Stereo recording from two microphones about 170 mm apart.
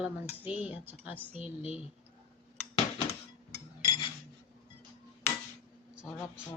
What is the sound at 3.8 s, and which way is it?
Cutlery, 30° left (ahead or behind).